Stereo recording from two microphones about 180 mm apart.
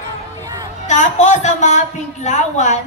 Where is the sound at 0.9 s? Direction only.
40° left (ahead or behind).